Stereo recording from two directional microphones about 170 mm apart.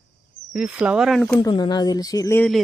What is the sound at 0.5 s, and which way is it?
Speech, 5° right (ahead or behind).